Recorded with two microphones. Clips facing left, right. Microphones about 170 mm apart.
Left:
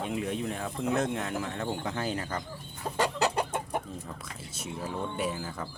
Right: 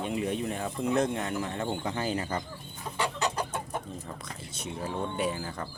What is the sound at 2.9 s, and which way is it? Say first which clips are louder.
Chicken: left 3 dB; 40° left (ahead or behind).